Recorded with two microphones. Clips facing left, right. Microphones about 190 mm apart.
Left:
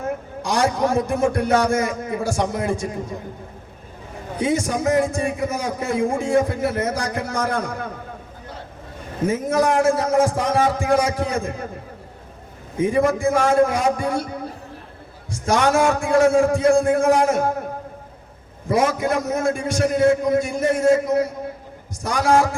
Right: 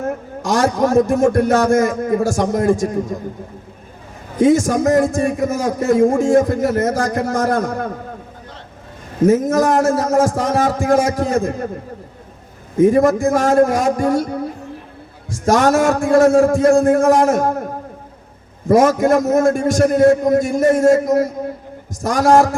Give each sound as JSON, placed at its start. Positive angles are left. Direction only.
{"t": 0.4, "sound": "a man's voice", "side_deg": -45}
{"t": 4.4, "sound": "a man's voice", "side_deg": -45}
{"t": 9.2, "sound": "a man's voice", "side_deg": -45}
{"t": 12.7, "sound": "a man's voice", "side_deg": -40}
{"t": 15.3, "sound": "a man's voice", "side_deg": -45}
{"t": 18.7, "sound": "a man's voice", "side_deg": -45}